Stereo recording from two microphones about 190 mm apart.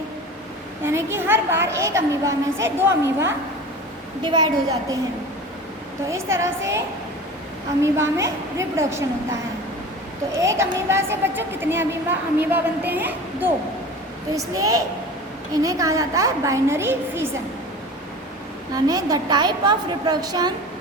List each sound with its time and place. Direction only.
0.9 s a woman's voice: 15° right (ahead or behind)
6.1 s a woman's voice: 15° right (ahead or behind)
10.3 s a woman's voice: 15° right (ahead or behind)
18.9 s a woman's voice: 20° right (ahead or behind)